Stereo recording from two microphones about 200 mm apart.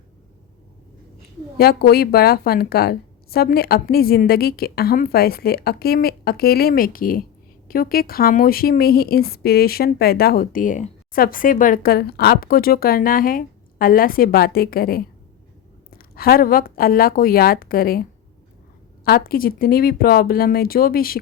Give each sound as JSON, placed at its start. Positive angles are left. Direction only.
{"t": 1.5, "sound": "speech", "side_deg": 50}